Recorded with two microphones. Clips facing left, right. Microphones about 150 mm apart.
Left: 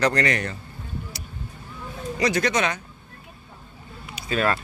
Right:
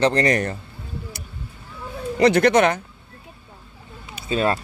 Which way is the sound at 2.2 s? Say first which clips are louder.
Right 8 dB; 60° right (ahead or behind).